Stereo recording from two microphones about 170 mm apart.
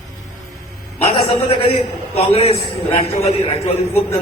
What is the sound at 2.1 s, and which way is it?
A man's voice, 35° left (ahead or behind).